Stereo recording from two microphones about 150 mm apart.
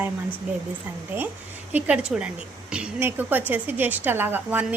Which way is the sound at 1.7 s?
10° right (ahead or behind).